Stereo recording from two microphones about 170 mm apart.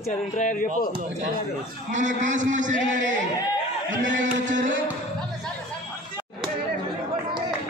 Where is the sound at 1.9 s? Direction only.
45° right (ahead or behind).